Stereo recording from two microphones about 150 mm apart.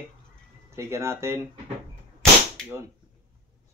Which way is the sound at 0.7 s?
20° right (ahead or behind).